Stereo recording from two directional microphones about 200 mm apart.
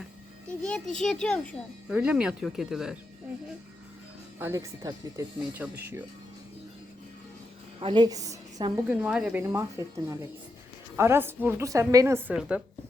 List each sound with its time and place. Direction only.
0.4 s a child's voice: 5° left (ahead or behind)
4.4 s a woman's voice: 15° right (ahead or behind)
7.8 s a woman's voice: 25° right (ahead or behind)
8.9 s a woman's voice: 5° right (ahead or behind)